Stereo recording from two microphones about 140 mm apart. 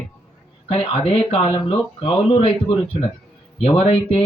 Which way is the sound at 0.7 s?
45° left (ahead or behind).